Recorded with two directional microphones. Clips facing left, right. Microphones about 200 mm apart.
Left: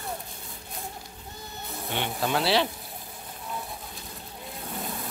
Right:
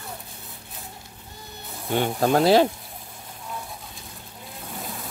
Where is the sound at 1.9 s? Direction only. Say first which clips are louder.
Right 7 dB; 45° right (ahead or behind).